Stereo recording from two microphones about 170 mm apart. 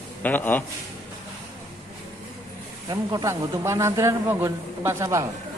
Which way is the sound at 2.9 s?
20° right (ahead or behind).